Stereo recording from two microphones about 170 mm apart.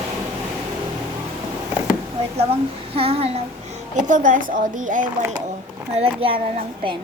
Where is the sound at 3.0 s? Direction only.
35° right (ahead or behind).